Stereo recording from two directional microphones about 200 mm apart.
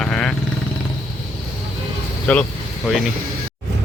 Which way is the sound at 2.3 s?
5° left (ahead or behind).